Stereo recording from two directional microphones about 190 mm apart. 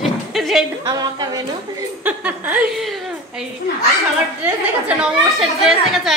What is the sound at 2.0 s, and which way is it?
Speech, 10° right (ahead or behind).